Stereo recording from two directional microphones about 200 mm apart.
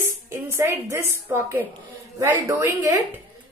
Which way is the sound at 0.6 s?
15° right (ahead or behind).